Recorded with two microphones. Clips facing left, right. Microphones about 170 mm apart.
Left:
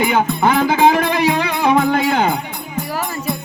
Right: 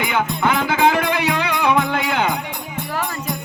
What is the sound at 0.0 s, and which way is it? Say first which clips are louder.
Music: left 4 dB; 40° left (ahead or behind).